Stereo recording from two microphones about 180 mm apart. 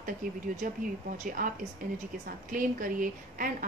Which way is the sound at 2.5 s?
50° right (ahead or behind).